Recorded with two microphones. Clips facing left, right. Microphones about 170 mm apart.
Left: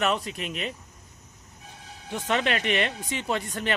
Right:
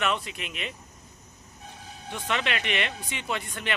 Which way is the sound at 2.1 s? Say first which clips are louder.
Left 4 dB; 40° left (ahead or behind).